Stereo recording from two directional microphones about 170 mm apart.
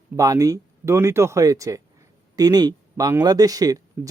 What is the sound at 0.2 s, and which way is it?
Speech, 20° right (ahead or behind).